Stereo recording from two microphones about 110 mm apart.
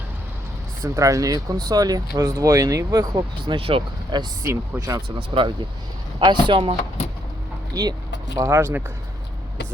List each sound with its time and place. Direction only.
0.8 s speech: 30° right (ahead or behind); by 3.8 s 60° right (ahead or behind)
4.1 s speech: 40° right (ahead or behind)
4.4 s speech: 25° right (ahead or behind)
5.3 s speech: 55° right (ahead or behind)
8.4 s speech: 25° right (ahead or behind)